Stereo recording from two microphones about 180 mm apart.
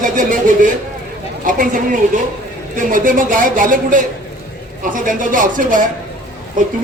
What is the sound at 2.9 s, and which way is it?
A man's voice, 50° right (ahead or behind).